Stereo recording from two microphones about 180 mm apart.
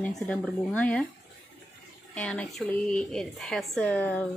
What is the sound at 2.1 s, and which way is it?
A woman's voice, 5° left (ahead or behind).